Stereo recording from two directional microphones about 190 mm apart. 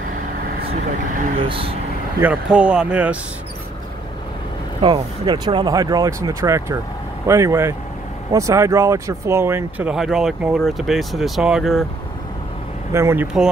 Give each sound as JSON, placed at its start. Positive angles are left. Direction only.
{"t": 1.5, "sound": "speech", "side_deg": -30}
{"t": 2.1, "sound": "speech", "side_deg": -5}
{"t": 4.8, "sound": "speech", "side_deg": -25}
{"t": 12.9, "sound": "speech", "side_deg": -15}